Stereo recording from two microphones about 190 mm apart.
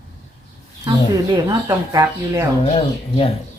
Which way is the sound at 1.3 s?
20° right (ahead or behind).